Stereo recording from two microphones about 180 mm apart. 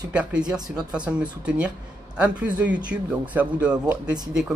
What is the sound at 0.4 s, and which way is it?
Speech, 20° right (ahead or behind).